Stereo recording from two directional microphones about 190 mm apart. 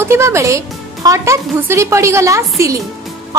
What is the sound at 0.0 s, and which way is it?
A woman's voice, 15° right (ahead or behind).